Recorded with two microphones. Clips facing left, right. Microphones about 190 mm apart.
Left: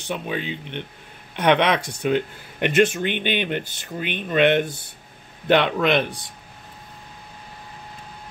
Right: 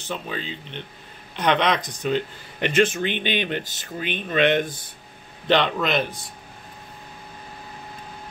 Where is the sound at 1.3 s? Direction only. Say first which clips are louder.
Left 3 dB; 60° left (ahead or behind).